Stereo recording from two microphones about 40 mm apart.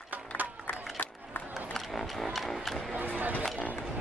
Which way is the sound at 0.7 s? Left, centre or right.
Left.